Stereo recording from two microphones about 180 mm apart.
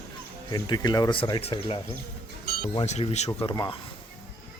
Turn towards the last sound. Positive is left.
turn(degrees=25)  # may be behind; listen again after turning